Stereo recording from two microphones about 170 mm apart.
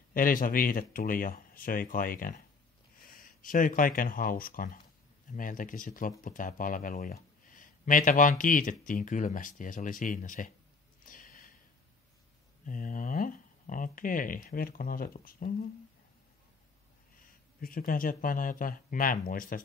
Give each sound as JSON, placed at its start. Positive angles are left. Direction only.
{"t": 0.1, "sound": "speech", "side_deg": 55}
{"t": 11.1, "sound": "a sound", "side_deg": 55}
{"t": 12.6, "sound": "speech", "side_deg": 55}
{"t": 17.6, "sound": "speech", "side_deg": 55}